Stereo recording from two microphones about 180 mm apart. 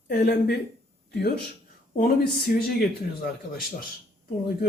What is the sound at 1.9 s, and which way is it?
Speech, 50° left (ahead or behind).